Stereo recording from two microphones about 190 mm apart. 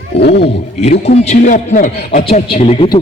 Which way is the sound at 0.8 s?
35° left (ahead or behind).